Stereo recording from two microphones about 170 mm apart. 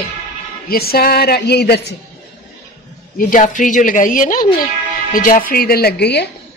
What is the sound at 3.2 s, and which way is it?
A woman's voice, 50° left (ahead or behind).